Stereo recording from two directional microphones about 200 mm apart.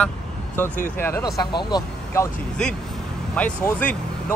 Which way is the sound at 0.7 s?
40° left (ahead or behind).